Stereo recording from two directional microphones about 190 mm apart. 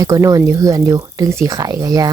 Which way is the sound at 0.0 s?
15° right (ahead or behind).